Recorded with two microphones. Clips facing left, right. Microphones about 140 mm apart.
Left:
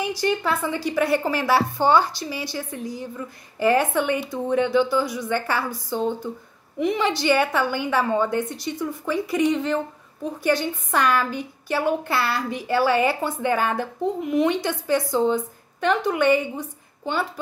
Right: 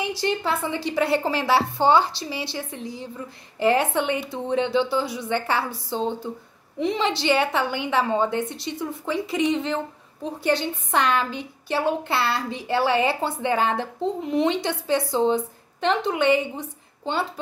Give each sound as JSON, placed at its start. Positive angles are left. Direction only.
{"t": 0.0, "sound": "a woman's voice", "side_deg": -25}